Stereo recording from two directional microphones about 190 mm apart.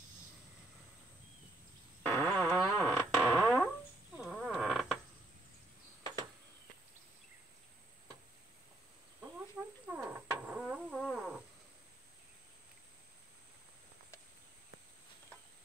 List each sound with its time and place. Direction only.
2.0 s fart: 10° left (ahead or behind)
4.2 s snoring: centre (ahead or behind)
9.9 s a sound: 5° right (ahead or behind)